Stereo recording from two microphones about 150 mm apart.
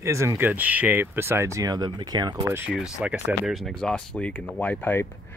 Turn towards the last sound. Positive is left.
turn(degrees=15)  # may be behind; listen again after turning